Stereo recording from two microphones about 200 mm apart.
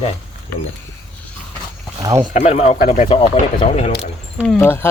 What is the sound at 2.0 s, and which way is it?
Speech, 20° right (ahead or behind).